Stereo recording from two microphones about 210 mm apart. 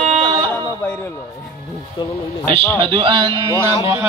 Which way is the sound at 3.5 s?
15° left (ahead or behind).